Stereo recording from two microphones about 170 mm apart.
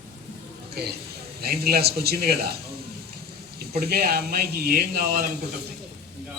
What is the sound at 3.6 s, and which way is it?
Speech, 65° right (ahead or behind).